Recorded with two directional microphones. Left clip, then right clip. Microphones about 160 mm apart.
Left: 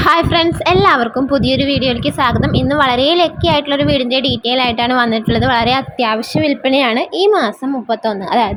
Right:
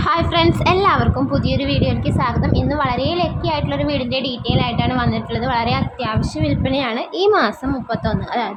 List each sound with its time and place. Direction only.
0.0 s a woman's voice: 25° left (ahead or behind)
7.2 s a woman's voice: 20° left (ahead or behind)
8.0 s a woman's voice: 30° left (ahead or behind)